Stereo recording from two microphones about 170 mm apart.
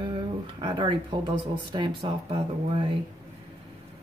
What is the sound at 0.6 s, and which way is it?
Speech, 25° right (ahead or behind).